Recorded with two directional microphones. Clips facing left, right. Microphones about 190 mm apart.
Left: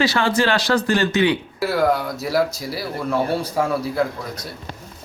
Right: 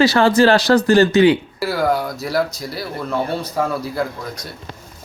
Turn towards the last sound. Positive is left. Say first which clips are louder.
# left 1 dB
turn(degrees=10)  # may be behind; listen again after turning